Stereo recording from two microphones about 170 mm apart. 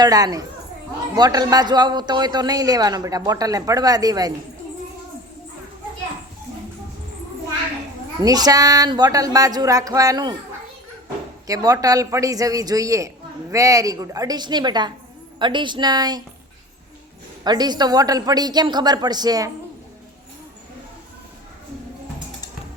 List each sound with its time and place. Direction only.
0.0 s speech: 20° right (ahead or behind)
8.2 s speech: 20° right (ahead or behind)
11.4 s speech: 20° right (ahead or behind)
17.4 s speech: 25° right (ahead or behind)